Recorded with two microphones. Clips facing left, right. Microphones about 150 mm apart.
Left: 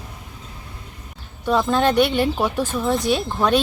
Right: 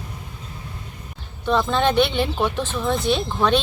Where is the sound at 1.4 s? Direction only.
10° left (ahead or behind).